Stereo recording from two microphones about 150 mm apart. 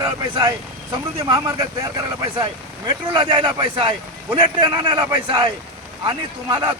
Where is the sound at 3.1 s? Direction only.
35° right (ahead or behind).